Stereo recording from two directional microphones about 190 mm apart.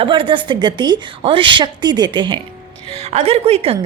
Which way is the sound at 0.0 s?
25° right (ahead or behind).